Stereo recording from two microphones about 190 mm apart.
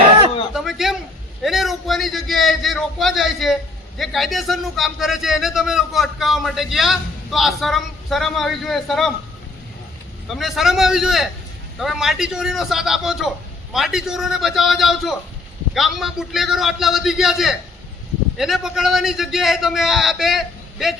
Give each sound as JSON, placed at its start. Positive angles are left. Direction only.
{"t": 0.5, "sound": "a man's voice", "side_deg": 0}
{"t": 10.2, "sound": "a man's voice", "side_deg": 0}